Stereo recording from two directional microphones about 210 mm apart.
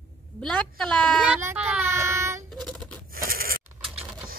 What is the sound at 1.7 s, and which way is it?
Child singing, 10° right (ahead or behind).